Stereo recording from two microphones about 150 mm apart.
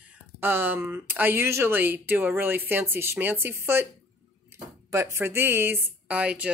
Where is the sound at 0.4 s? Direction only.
15° right (ahead or behind).